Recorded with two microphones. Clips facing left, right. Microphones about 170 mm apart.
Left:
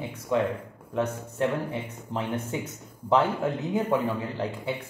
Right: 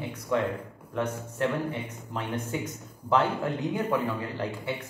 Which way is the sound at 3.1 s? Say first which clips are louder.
Left 2 dB; 20° left (ahead or behind).